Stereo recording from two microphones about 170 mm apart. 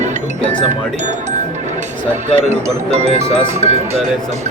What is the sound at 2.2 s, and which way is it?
Speech, 40° right (ahead or behind).